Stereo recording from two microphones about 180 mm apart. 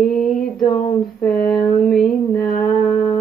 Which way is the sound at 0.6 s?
40° left (ahead or behind).